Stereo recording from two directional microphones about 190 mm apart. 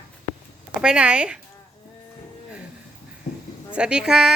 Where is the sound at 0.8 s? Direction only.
5° right (ahead or behind).